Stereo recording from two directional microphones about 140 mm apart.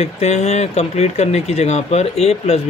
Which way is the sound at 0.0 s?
50° left (ahead or behind).